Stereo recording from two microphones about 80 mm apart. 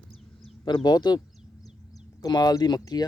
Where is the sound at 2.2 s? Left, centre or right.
Left.